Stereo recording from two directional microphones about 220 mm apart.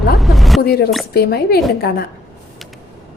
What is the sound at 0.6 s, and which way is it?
A woman's voice, 45° left (ahead or behind).